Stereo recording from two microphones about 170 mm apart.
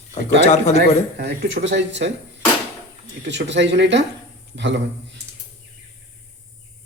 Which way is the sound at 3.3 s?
90° right.